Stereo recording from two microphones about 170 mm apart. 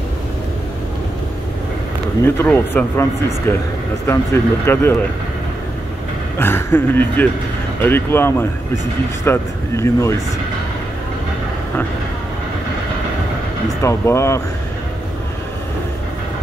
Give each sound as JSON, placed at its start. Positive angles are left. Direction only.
{"t": 2.2, "sound": "speech", "side_deg": 15}
{"t": 6.4, "sound": "speech", "side_deg": 10}
{"t": 13.8, "sound": "speech", "side_deg": 15}